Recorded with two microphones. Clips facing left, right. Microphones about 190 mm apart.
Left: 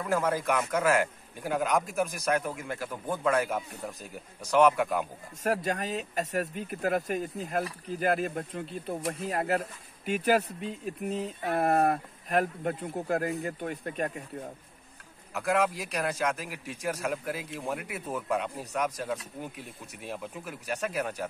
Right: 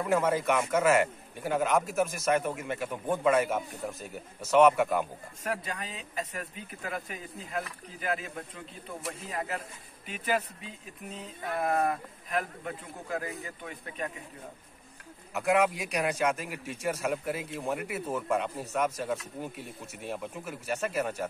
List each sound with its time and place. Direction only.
0.0 s a man's voice: 5° right (ahead or behind)
5.4 s speech: 45° left (ahead or behind)
8.2 s speech: 60° left (ahead or behind)
15.3 s a man's voice: 10° right (ahead or behind)